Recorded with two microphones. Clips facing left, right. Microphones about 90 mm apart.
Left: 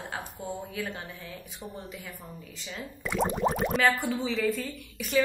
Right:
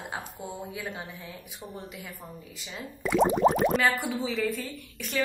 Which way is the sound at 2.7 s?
5° right (ahead or behind).